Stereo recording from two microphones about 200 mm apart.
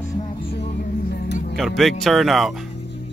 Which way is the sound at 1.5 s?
Centre (ahead or behind).